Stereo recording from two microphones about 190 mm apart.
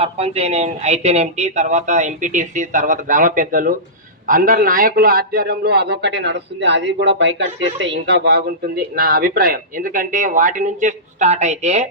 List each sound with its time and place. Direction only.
0.0 s a man's voice: 30° right (ahead or behind)